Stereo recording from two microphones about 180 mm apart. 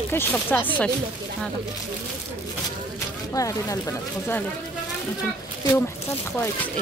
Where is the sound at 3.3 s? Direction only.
20° left (ahead or behind).